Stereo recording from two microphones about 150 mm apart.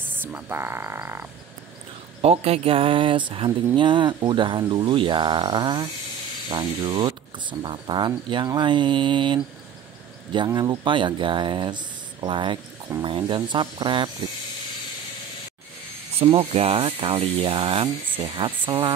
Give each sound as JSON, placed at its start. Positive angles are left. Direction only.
{"t": 0.0, "sound": "frog", "side_deg": -15}
{"t": 2.2, "sound": "speech", "side_deg": -40}
{"t": 16.2, "sound": "speech", "side_deg": -40}